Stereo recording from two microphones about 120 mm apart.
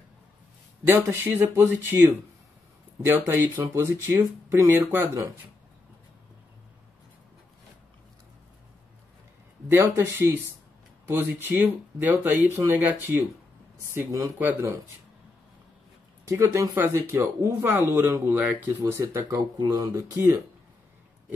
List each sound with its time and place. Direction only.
0.8 s speech: 20° right (ahead or behind)
3.1 s speech: 20° right (ahead or behind)
9.7 s speech: 20° right (ahead or behind)
11.4 s speech: 15° right (ahead or behind)
16.3 s speech: 25° right (ahead or behind)